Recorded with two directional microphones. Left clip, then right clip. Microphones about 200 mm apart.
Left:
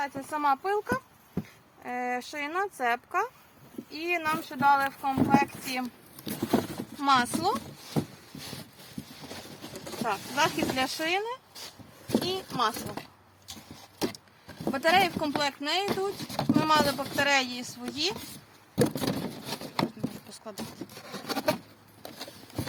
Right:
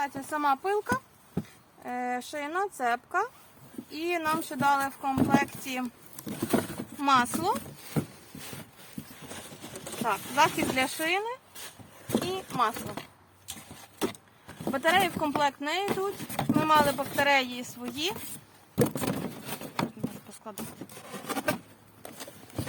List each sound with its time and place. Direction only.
0.0 s speech: 20° right (ahead or behind)
1.8 s speech: 10° right (ahead or behind)
6.5 s horse: 10° right (ahead or behind)
9.3 s a sound: centre (ahead or behind)
10.2 s speech: 5° right (ahead or behind)
12.2 s clip-clop: 15° left (ahead or behind)
12.5 s speech: 15° left (ahead or behind)
14.6 s speech: 5° left (ahead or behind)
18.8 s a sound: centre (ahead or behind)